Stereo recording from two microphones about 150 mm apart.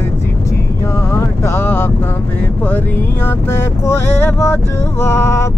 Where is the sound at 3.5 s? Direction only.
15° left (ahead or behind).